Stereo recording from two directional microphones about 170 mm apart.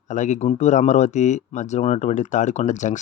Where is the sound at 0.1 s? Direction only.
45° left (ahead or behind).